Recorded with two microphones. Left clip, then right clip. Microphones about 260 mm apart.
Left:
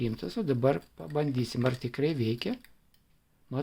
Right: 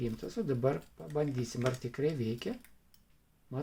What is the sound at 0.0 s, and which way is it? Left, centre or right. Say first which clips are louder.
Speech: left 4 dB; left.